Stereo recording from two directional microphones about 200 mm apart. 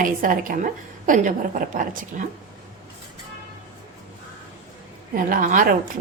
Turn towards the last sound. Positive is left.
turn(degrees=-40)  # may be behind; listen again after turning